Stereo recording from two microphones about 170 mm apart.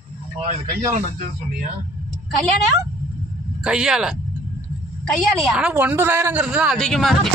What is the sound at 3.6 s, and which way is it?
Speech, 5° right (ahead or behind).